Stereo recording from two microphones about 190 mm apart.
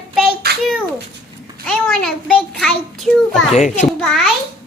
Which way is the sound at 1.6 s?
5° left (ahead or behind).